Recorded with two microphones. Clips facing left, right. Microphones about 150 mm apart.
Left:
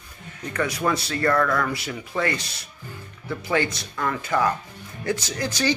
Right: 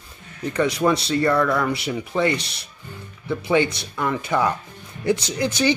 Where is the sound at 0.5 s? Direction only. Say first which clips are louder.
Right 4 dB; 20° right (ahead or behind).